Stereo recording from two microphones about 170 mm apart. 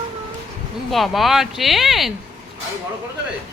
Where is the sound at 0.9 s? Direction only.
Centre (ahead or behind).